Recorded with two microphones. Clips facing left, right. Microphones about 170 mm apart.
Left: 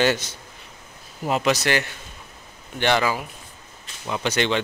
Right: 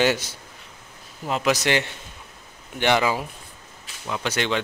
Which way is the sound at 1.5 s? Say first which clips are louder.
Even; 20° right (ahead or behind).